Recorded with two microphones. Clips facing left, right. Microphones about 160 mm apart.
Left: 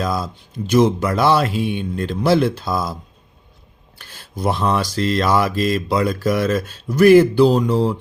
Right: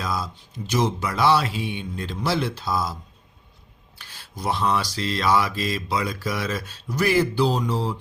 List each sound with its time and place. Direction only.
0.0 s mantra: 50° left (ahead or behind)